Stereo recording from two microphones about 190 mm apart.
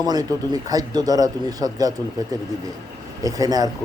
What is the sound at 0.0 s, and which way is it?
A man's voice, 20° right (ahead or behind).